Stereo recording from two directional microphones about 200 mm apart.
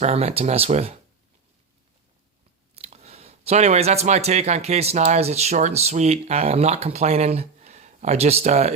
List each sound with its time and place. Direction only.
0.0 s speech: 30° right (ahead or behind)
2.7 s speech: 30° right (ahead or behind)